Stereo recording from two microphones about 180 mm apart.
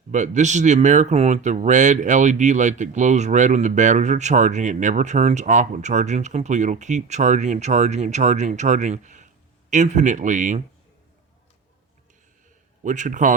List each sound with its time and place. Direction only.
0.1 s speech: 40° right (ahead or behind)
12.8 s a man's voice: 45° right (ahead or behind)